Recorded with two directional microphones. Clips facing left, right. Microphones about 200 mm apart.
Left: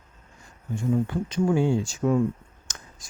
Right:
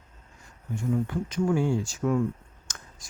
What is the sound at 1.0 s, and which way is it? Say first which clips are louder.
Speech: left 2 dB; 30° left (ahead or behind).